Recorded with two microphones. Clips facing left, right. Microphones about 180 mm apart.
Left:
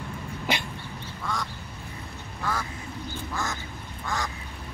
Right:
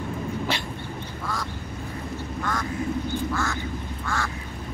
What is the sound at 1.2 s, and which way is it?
Quack, centre (ahead or behind).